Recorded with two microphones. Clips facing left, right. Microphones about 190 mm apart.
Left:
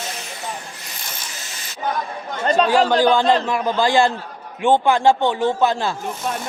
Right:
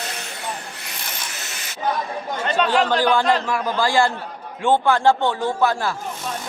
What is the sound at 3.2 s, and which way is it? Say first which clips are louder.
A man's voice: left 2 dB; 25° left (ahead or behind).